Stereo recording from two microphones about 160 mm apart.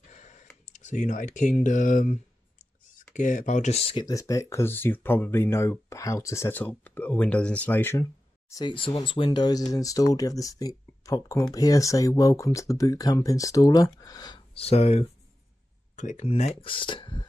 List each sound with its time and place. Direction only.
0.1 s a sound: 50° left (ahead or behind)
4.0 s speech: 20° left (ahead or behind)
8.6 s speech: 30° left (ahead or behind)
14.5 s speech: 40° left (ahead or behind)